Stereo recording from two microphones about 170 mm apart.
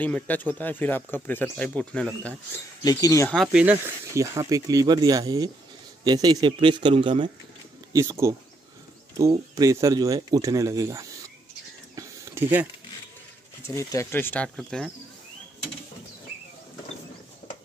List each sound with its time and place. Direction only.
0.0 s speech: 10° left (ahead or behind)
2.8 s speech: 20° left (ahead or behind)
3.3 s speech: centre (ahead or behind); by 7.2 s 30° right (ahead or behind)
7.9 s speech: 20° right (ahead or behind)
9.6 s speech: 20° right (ahead or behind)
11.9 s a sound: 15° right (ahead or behind)
13.7 s speech: 15° left (ahead or behind)